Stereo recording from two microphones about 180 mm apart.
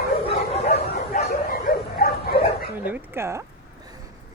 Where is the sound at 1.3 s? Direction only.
55° left (ahead or behind).